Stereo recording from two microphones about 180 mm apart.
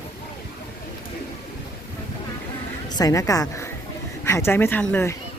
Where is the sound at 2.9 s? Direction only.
20° left (ahead or behind).